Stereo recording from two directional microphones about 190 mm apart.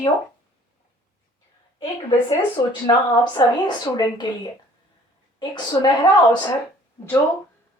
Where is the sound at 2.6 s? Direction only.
25° left (ahead or behind).